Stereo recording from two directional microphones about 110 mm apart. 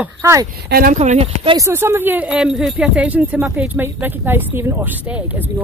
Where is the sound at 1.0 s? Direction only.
90° right.